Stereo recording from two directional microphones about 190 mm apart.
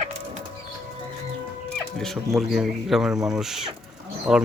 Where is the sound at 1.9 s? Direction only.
Centre (ahead or behind).